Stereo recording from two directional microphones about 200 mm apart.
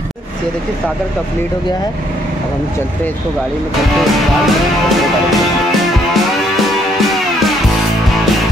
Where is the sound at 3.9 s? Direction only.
Centre (ahead or behind).